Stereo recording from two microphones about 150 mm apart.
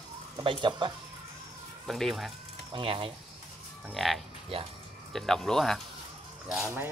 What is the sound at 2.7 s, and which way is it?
Speech, 35° right (ahead or behind).